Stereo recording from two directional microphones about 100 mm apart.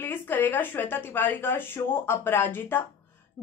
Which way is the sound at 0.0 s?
20° left (ahead or behind).